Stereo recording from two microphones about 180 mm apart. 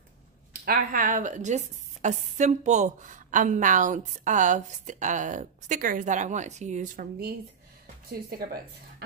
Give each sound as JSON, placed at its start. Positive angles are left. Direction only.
{"t": 0.7, "sound": "a woman's voice", "side_deg": -50}